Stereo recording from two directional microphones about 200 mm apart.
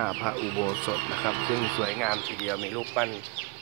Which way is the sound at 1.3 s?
30° left (ahead or behind).